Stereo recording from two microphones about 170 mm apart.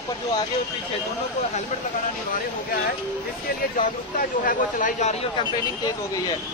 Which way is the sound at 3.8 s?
50° left (ahead or behind).